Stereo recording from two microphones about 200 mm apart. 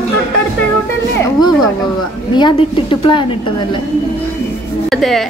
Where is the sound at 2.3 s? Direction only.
25° left (ahead or behind).